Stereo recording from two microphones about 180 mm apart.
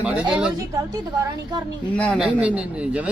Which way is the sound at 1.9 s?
5° left (ahead or behind).